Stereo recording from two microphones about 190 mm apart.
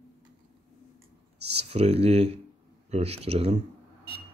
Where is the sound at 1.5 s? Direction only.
35° right (ahead or behind).